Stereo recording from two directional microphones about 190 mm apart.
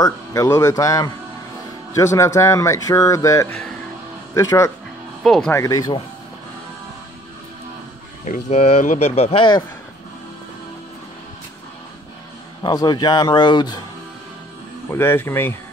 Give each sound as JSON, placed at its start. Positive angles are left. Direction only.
{"t": 0.0, "sound": "a man's voice", "side_deg": 15}
{"t": 5.2, "sound": "speech", "side_deg": 0}
{"t": 5.5, "sound": "a man's voice", "side_deg": 15}
{"t": 8.3, "sound": "speech", "side_deg": 35}
{"t": 12.6, "sound": "a man's voice", "side_deg": 20}
{"t": 14.9, "sound": "a man's voice", "side_deg": 10}